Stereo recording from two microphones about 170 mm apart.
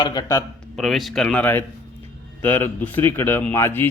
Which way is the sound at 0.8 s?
Centre (ahead or behind).